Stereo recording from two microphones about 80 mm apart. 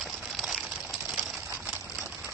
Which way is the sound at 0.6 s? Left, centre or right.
Centre.